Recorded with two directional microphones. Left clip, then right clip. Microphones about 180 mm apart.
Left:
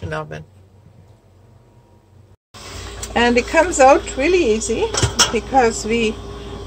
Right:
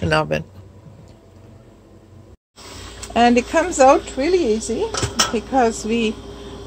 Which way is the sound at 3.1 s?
35° right (ahead or behind).